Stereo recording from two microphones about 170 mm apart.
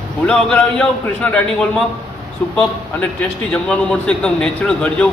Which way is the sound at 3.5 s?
5° left (ahead or behind).